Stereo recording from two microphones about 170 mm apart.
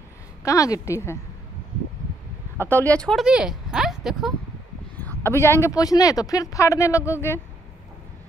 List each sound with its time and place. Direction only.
0.4 s speech: 20° left (ahead or behind)
2.7 s speech: 10° left (ahead or behind)
4.9 s speech: 10° left (ahead or behind)